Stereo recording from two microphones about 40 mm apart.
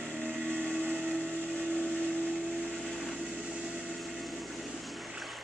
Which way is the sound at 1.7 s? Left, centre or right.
Left.